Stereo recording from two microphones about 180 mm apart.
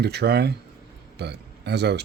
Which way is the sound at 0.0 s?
65° right (ahead or behind).